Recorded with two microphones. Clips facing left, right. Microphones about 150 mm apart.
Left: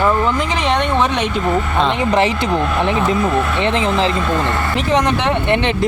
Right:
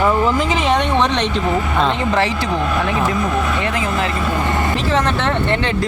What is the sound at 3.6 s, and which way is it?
Speech, 25° left (ahead or behind).